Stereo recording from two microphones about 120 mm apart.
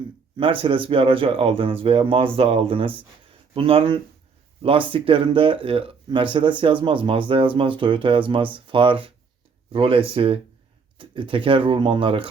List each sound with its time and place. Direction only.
0.3 s speech: 45° right (ahead or behind)